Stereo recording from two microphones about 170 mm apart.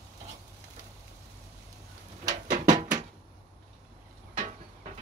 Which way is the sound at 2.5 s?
45° right (ahead or behind).